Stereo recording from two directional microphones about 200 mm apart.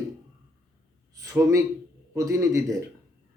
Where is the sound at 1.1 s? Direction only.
15° right (ahead or behind).